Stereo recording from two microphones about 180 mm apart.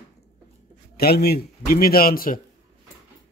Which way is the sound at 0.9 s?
60° left (ahead or behind).